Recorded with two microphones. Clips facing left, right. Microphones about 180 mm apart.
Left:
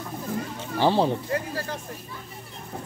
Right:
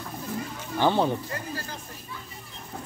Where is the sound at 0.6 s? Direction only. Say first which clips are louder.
Left 1 dB; 30° left (ahead or behind).